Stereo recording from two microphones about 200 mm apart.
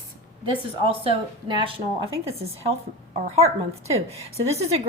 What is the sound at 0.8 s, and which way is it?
A woman's voice, 25° right (ahead or behind).